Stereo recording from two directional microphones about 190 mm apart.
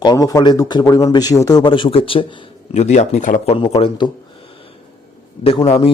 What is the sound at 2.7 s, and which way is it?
A man's voice, 40° left (ahead or behind).